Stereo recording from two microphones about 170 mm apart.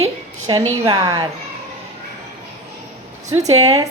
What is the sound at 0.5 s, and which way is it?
Speech, 30° right (ahead or behind).